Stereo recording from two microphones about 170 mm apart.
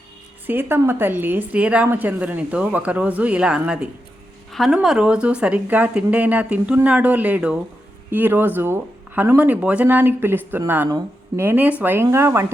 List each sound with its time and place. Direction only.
0.4 s a woman's voice: 15° right (ahead or behind)